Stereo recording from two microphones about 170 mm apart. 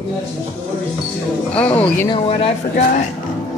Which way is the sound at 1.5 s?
10° left (ahead or behind).